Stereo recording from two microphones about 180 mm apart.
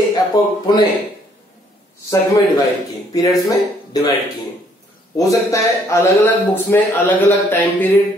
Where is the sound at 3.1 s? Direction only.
20° left (ahead or behind).